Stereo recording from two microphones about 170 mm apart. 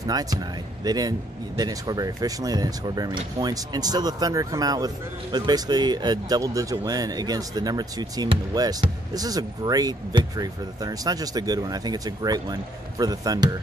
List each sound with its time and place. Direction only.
0.0 s speech: 20° right (ahead or behind)